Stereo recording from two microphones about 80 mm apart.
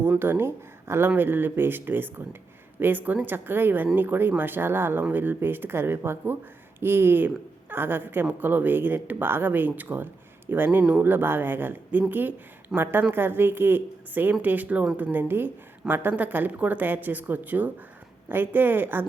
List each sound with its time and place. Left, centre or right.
0.2 s a woman's voice: right